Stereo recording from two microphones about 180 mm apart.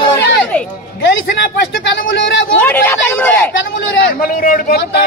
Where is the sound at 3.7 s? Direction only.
55° left (ahead or behind).